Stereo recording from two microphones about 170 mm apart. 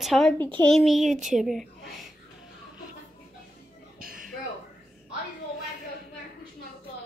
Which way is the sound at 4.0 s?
55° right (ahead or behind).